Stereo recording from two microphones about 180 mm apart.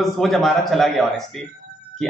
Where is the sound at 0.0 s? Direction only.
Centre (ahead or behind).